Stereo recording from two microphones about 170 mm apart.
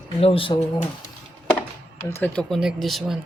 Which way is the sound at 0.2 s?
35° left (ahead or behind).